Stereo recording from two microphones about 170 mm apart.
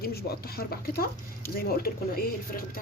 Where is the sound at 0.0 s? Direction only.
65° left (ahead or behind).